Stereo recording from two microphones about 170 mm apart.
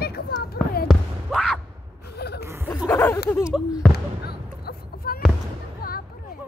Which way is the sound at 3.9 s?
70° left (ahead or behind).